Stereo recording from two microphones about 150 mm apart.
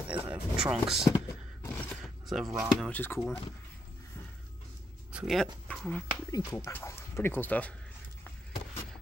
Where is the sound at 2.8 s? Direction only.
10° left (ahead or behind).